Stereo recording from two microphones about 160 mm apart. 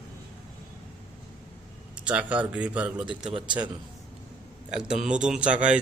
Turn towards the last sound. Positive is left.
turn(degrees=-50)  # may be behind; listen again after turning